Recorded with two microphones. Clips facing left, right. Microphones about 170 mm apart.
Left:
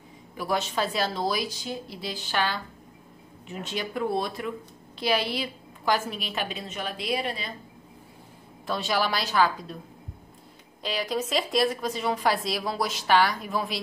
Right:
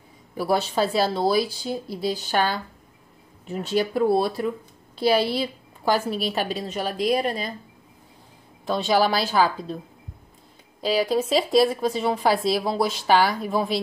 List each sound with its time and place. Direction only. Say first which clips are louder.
0.4 s a woman's voice: right 5 dB; 35° right (ahead or behind)
8.6 s a woman's voice: right 5 dB; centre (ahead or behind)
9.2 s a woman's voice: right 3 dB; 30° right (ahead or behind)
10.8 s a woman's voice: right 7 dB; 30° right (ahead or behind)